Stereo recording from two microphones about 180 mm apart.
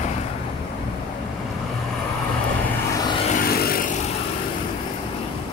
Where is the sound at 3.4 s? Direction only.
55° left (ahead or behind).